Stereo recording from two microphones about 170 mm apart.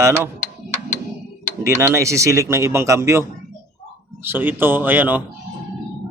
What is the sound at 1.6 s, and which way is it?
Speech, 15° right (ahead or behind).